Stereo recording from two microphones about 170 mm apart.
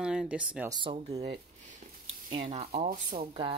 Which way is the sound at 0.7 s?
30° right (ahead or behind).